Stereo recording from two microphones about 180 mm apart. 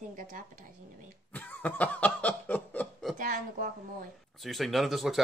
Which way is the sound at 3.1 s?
50° right (ahead or behind).